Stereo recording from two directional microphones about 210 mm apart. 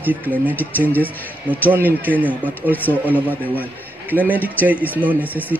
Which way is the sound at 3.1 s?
10° right (ahead or behind).